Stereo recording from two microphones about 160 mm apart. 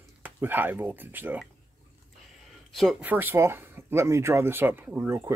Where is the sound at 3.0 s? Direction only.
15° right (ahead or behind).